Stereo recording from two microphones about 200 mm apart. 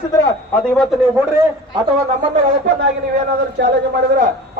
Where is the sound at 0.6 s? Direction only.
5° left (ahead or behind).